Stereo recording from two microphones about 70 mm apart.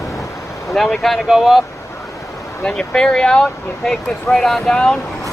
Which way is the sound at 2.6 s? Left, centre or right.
Centre.